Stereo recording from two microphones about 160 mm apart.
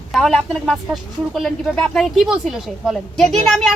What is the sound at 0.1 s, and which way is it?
A woman's voice, centre (ahead or behind).